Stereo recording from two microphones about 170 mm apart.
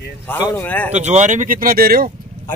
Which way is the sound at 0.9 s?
45° right (ahead or behind).